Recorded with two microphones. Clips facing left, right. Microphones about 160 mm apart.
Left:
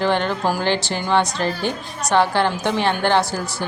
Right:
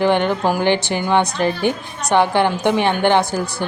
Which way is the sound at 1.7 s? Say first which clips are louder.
Right 2 dB; 15° right (ahead or behind).